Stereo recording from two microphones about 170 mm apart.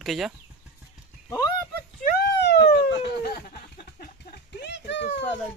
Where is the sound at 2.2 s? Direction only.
90° left.